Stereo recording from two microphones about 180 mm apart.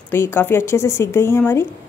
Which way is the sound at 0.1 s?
10° left (ahead or behind).